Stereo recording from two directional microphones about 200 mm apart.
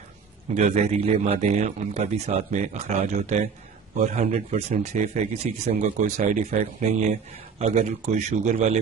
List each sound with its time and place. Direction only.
0.6 s speech: 35° right (ahead or behind)